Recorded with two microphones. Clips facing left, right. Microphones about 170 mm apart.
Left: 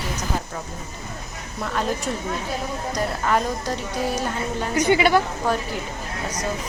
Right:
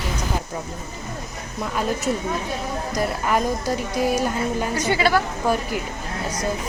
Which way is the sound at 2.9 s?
10° right (ahead or behind).